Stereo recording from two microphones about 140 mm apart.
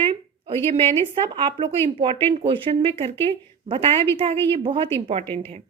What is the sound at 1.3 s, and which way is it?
A woman's voice, 35° right (ahead or behind).